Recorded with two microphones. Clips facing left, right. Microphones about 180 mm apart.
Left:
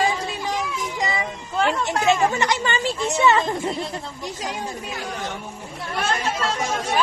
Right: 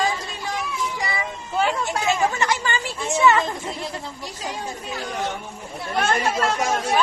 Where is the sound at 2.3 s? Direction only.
20° left (ahead or behind).